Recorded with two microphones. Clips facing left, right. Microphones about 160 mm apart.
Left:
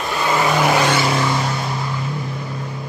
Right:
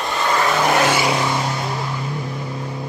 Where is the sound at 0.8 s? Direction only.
10° right (ahead or behind).